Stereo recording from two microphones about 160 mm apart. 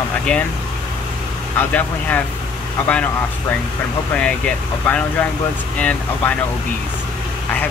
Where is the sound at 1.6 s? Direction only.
10° left (ahead or behind).